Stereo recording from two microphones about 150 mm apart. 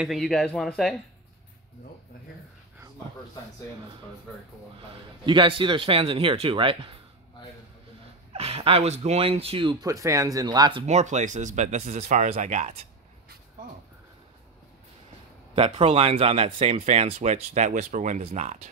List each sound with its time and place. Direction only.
0.0 s speech: centre (ahead or behind)
5.2 s speech: 35° right (ahead or behind)
8.3 s speech: 40° right (ahead or behind)
9.8 s speech: 20° right (ahead or behind)
10.9 s speech: 50° right (ahead or behind)
15.5 s speech: 40° right (ahead or behind)